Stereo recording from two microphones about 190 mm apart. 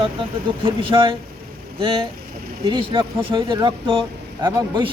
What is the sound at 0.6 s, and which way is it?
A man's voice, 25° right (ahead or behind).